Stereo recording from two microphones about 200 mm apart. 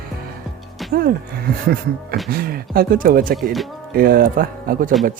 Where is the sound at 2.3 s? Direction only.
50° right (ahead or behind).